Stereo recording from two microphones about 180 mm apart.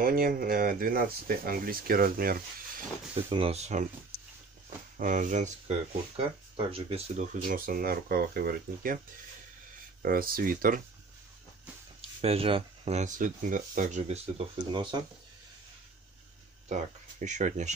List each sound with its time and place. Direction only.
0.0 s speech: 55° right (ahead or behind)
3.3 s speech: 30° right (ahead or behind)
4.9 s speech: 45° right (ahead or behind)
10.0 s speech: 55° right (ahead or behind)
12.2 s speech: 35° right (ahead or behind)
16.6 s speech: 40° right (ahead or behind)